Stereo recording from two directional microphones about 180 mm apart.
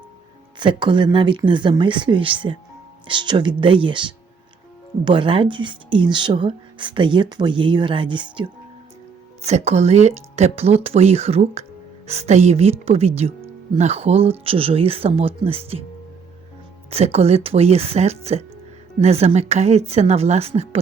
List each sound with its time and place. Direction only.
0.6 s speech: 25° right (ahead or behind)
9.4 s a woman's voice: 35° right (ahead or behind)
16.9 s a woman's voice: 35° right (ahead or behind)